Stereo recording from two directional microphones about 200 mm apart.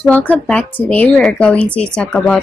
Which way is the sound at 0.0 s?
5° left (ahead or behind).